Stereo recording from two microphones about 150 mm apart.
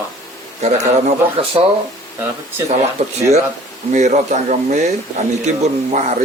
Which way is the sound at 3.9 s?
55° right (ahead or behind).